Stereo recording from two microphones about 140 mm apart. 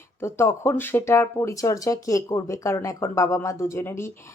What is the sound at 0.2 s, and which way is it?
Speech, 20° left (ahead or behind).